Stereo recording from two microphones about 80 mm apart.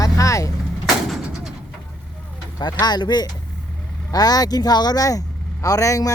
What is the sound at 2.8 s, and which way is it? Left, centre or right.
Speech, left.